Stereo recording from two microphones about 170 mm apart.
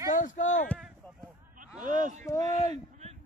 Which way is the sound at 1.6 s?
50° right (ahead or behind).